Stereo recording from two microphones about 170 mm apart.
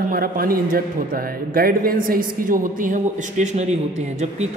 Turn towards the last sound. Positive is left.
turn(degrees=-45)  # may be behind; listen again after turning